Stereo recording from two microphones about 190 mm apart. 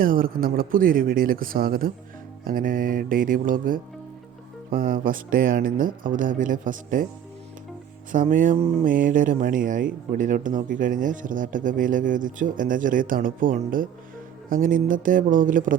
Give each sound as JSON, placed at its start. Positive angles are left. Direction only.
{"t": 0.0, "sound": "speech", "side_deg": -50}
{"t": 8.1, "sound": "speech", "side_deg": -45}